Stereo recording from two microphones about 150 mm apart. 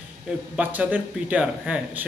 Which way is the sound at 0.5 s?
10° right (ahead or behind).